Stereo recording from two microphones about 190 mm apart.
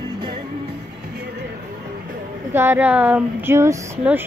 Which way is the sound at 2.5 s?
10° right (ahead or behind).